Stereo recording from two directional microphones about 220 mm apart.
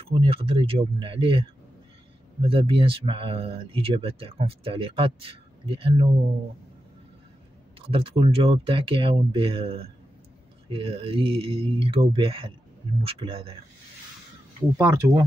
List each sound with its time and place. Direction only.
0.1 s speech: 25° right (ahead or behind)
2.4 s speech: 25° right (ahead or behind)
7.8 s speech: 25° right (ahead or behind)
14.8 s speech: 10° right (ahead or behind)